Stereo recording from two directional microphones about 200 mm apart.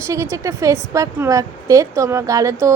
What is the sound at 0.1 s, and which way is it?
A woman's voice, 15° right (ahead or behind).